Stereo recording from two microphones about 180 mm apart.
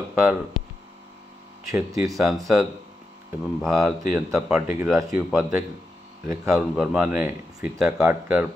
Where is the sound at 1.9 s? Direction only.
20° right (ahead or behind).